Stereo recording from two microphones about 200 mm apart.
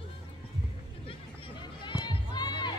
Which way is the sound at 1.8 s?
25° left (ahead or behind).